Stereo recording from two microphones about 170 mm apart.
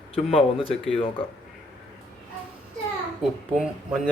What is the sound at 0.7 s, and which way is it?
Speech, 5° left (ahead or behind).